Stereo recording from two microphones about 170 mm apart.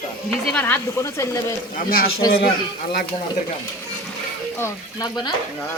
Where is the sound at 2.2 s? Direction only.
30° left (ahead or behind).